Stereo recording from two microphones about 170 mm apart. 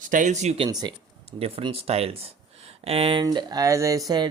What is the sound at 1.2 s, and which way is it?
Speech, 35° right (ahead or behind).